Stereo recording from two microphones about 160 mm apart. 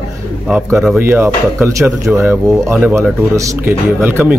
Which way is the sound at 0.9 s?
15° right (ahead or behind).